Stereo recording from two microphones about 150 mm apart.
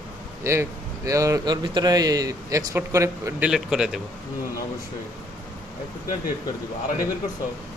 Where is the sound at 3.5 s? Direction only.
5° right (ahead or behind).